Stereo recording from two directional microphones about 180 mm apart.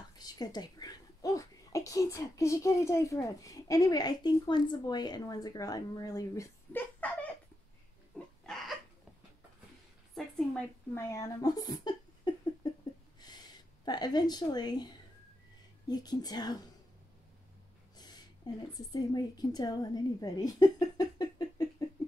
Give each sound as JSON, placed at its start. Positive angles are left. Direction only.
{"t": 0.2, "sound": "speech", "side_deg": 20}
{"t": 10.1, "sound": "a woman's voice", "side_deg": 0}
{"t": 11.0, "sound": "a woman's voice", "side_deg": 15}
{"t": 17.9, "sound": "a sound", "side_deg": 20}
{"t": 18.4, "sound": "a woman's voice", "side_deg": 25}